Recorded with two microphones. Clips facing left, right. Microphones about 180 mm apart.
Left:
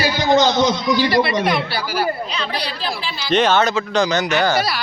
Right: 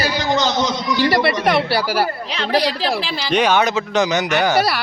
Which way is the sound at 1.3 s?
70° right (ahead or behind).